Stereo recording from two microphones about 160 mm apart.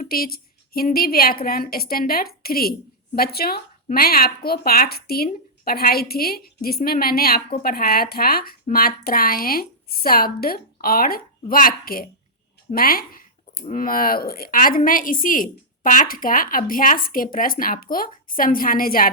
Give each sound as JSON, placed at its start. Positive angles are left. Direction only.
{"t": 0.1, "sound": "a woman's voice", "side_deg": 70}
{"t": 13.5, "sound": "speech", "side_deg": 50}